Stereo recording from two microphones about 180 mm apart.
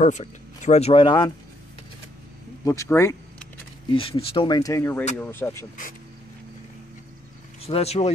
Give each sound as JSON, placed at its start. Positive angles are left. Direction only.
{"t": 0.0, "sound": "speech", "side_deg": 40}
{"t": 2.6, "sound": "speech", "side_deg": 15}
{"t": 3.9, "sound": "speech", "side_deg": 30}
{"t": 7.6, "sound": "speech", "side_deg": 35}